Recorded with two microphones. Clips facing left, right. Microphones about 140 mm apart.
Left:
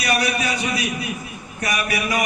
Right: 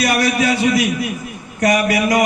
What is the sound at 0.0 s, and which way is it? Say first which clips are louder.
A man's voice: right 6 dB; 85° right.